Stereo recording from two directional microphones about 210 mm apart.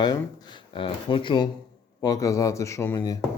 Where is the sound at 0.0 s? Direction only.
20° left (ahead or behind).